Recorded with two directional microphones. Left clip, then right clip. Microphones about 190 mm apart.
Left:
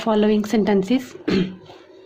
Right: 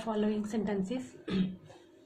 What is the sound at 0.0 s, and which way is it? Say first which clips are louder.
Speech: left 15 dB; 40° left (ahead or behind).